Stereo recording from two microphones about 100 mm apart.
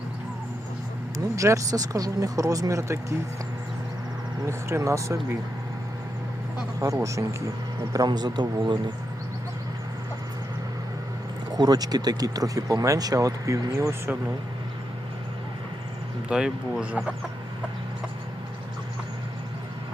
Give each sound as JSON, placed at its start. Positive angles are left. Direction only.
{"t": 1.4, "sound": "speech", "side_deg": -30}
{"t": 4.4, "sound": "speech", "side_deg": -30}
{"t": 6.7, "sound": "speech", "side_deg": -35}
{"t": 7.9, "sound": "a man's voice", "side_deg": -45}
{"t": 11.5, "sound": "speech", "side_deg": -40}
{"t": 16.3, "sound": "speech", "side_deg": -10}